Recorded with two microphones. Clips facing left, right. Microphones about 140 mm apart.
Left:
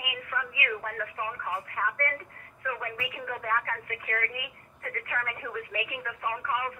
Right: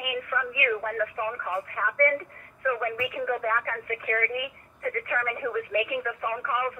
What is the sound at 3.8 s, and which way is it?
Speech, 50° right (ahead or behind).